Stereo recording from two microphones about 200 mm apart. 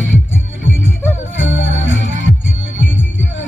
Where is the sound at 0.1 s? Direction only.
75° left (ahead or behind).